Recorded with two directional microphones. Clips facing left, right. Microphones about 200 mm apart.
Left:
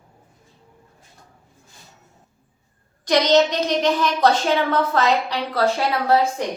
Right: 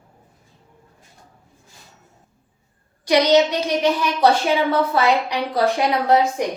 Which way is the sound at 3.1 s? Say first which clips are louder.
Right 1 dB; 10° right (ahead or behind).